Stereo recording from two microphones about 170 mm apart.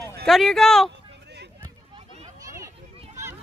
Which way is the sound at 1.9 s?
40° right (ahead or behind).